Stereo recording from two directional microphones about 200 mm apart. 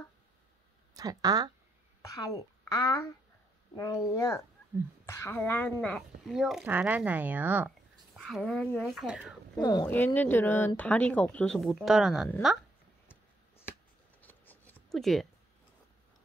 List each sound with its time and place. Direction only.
0.9 s speech: 15° right (ahead or behind)
2.0 s a woman's voice: 15° left (ahead or behind); by 9.3 s 5° right (ahead or behind)
9.6 s speech: 20° left (ahead or behind)
9.8 s speech: 10° left (ahead or behind)
14.2 s a sound: 10° left (ahead or behind)